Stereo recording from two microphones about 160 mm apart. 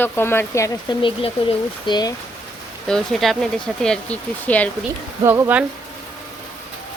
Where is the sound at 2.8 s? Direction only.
Centre (ahead or behind).